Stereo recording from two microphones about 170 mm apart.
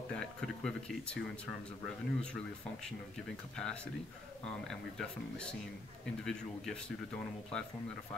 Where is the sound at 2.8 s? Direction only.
5° left (ahead or behind).